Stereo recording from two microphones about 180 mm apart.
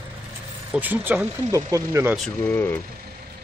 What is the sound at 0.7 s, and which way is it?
Speech, 10° right (ahead or behind).